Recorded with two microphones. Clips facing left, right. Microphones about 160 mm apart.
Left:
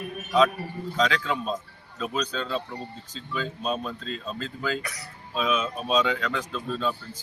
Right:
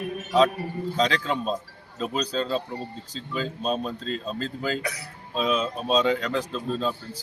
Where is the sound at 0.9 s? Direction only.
35° right (ahead or behind).